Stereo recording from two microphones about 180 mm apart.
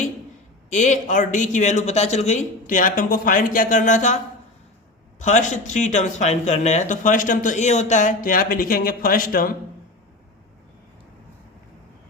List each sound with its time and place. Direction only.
0.7 s speech: 40° left (ahead or behind)
5.2 s speech: 40° left (ahead or behind)